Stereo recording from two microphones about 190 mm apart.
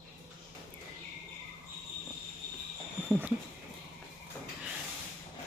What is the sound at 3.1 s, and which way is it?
Speech, 5° right (ahead or behind).